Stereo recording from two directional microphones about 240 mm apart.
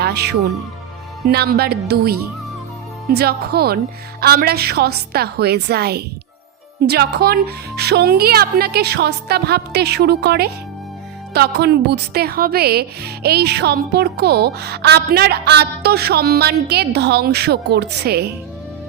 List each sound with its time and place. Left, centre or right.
0.0 s speech: right